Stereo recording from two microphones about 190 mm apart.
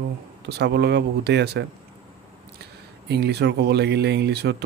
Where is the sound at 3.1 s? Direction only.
60° right (ahead or behind).